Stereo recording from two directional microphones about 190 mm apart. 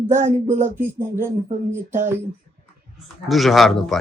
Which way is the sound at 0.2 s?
40° right (ahead or behind).